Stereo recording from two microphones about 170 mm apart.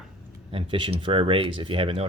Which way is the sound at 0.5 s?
30° right (ahead or behind).